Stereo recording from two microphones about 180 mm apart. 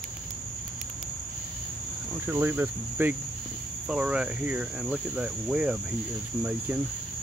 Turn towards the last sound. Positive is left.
turn(degrees=-5)  # may be behind; listen again after turning